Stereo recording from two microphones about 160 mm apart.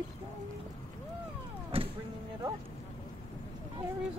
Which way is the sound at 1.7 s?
35° right (ahead or behind).